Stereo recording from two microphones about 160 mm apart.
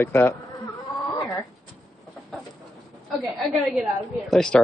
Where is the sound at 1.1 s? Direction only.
25° left (ahead or behind).